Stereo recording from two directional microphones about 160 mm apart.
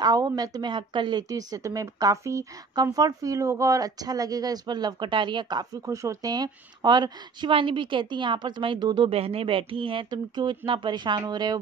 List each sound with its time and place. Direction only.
0.0 s a woman's voice: 25° right (ahead or behind)